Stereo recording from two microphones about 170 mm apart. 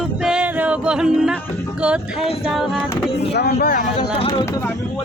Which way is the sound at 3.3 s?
70° left (ahead or behind).